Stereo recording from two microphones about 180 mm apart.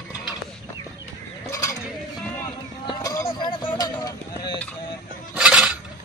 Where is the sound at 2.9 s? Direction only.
20° left (ahead or behind).